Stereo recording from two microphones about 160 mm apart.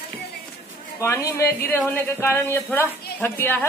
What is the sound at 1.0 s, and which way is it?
Speech, 20° left (ahead or behind).